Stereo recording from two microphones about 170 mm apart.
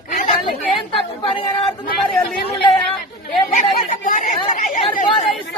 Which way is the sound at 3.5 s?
50° left (ahead or behind).